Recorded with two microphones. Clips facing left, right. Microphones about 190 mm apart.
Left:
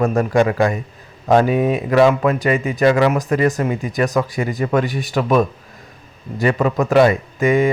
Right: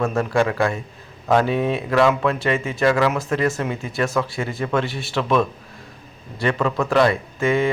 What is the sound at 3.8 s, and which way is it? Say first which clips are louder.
Speech: left 4 dB; 15° left (ahead or behind).